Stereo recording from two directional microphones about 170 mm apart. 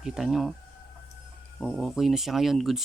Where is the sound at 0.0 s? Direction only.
Centre (ahead or behind).